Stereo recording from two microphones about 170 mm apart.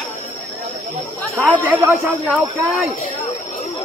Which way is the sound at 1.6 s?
10° right (ahead or behind).